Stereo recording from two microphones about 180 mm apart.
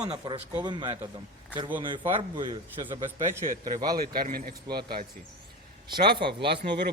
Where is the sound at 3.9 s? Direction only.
55° right (ahead or behind).